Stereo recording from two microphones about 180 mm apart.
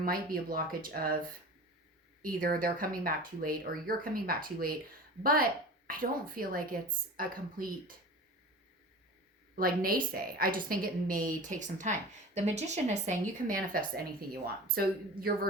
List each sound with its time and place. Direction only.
0.0 s a woman's voice: 55° right (ahead or behind)
2.2 s a woman's voice: 50° right (ahead or behind)
9.6 s a woman's voice: 55° right (ahead or behind)